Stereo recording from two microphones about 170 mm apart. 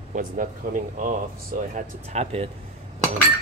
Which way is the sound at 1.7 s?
40° right (ahead or behind).